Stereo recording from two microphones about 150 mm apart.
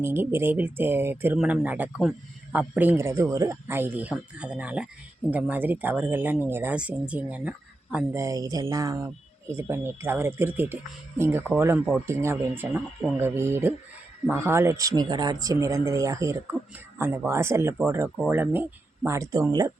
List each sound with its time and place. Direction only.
0.0 s speech: 15° right (ahead or behind)
8.1 s speech: 20° right (ahead or behind)